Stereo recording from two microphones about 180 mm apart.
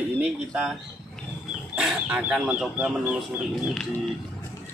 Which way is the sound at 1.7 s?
5° right (ahead or behind).